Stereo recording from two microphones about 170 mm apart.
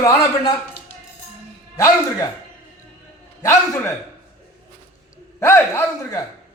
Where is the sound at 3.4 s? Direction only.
20° left (ahead or behind).